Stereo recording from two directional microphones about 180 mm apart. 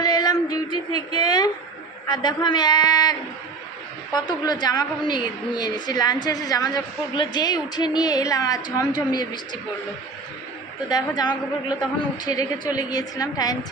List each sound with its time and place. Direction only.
0.0 s music: 20° left (ahead or behind)
2.0 s a woman's voice: 25° left (ahead or behind)
10.8 s a woman's voice: 25° left (ahead or behind)